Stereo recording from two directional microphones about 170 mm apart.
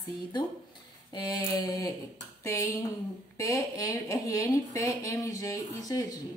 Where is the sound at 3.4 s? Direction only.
20° left (ahead or behind).